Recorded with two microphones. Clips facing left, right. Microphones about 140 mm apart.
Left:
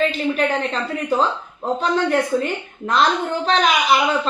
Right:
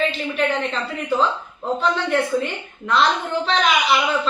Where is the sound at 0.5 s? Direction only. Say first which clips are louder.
Left 1 dB; 40° left (ahead or behind).